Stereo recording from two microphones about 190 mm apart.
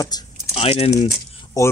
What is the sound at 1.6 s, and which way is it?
Speech, 20° left (ahead or behind).